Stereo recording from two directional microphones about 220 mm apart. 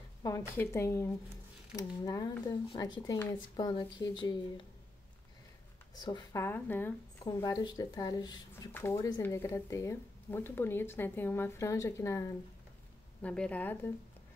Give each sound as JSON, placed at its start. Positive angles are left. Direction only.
{"t": 0.2, "sound": "a woman's voice", "side_deg": 15}
{"t": 5.9, "sound": "a woman's voice", "side_deg": 20}